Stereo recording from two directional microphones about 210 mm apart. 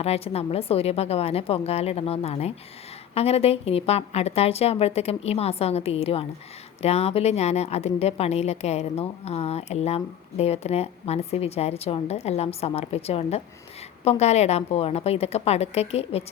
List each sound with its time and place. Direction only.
0.0 s a woman's voice: 30° left (ahead or behind)